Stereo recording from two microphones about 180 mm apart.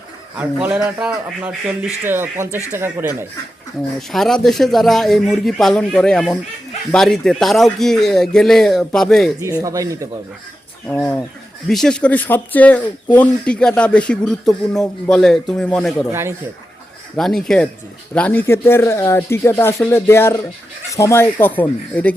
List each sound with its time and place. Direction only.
0.3 s a man's voice: 10° right (ahead or behind)
4.1 s speech: centre (ahead or behind)
9.4 s a man's voice: 20° right (ahead or behind)
10.8 s speech: 10° left (ahead or behind)
17.2 s speech: centre (ahead or behind)